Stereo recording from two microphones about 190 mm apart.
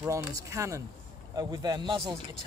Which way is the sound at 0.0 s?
15° right (ahead or behind).